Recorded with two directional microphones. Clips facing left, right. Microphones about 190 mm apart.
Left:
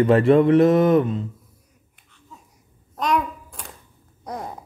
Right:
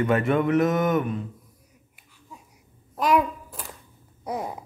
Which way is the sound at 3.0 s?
5° right (ahead or behind).